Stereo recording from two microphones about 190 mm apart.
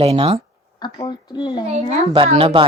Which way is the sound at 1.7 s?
35° right (ahead or behind).